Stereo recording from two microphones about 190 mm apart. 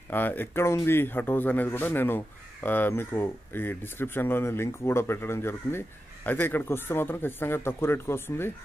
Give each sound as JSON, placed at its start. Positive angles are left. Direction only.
{"t": 0.1, "sound": "a man's voice", "side_deg": 10}